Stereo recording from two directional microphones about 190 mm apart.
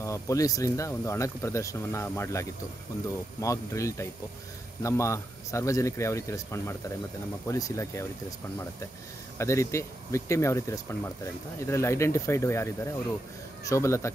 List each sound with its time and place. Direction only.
0.0 s speech: 15° left (ahead or behind)
9.4 s speech: 15° left (ahead or behind)